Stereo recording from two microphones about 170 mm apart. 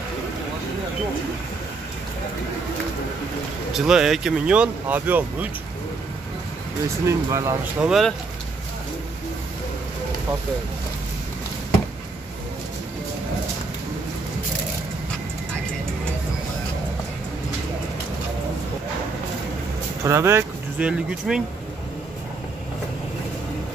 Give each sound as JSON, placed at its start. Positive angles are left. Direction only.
{"t": 3.7, "sound": "speech", "side_deg": -5}
{"t": 7.1, "sound": "speech", "side_deg": -15}
{"t": 7.8, "sound": "speech", "side_deg": 0}
{"t": 20.1, "sound": "speech", "side_deg": -15}
{"t": 21.3, "sound": "speech", "side_deg": -5}